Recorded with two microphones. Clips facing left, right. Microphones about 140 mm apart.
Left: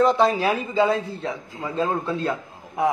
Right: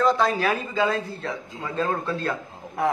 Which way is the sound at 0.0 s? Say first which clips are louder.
Left 3 dB; 25° left (ahead or behind).